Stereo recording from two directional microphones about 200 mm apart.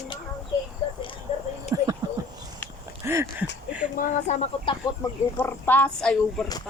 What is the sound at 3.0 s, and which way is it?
Music, 10° right (ahead or behind).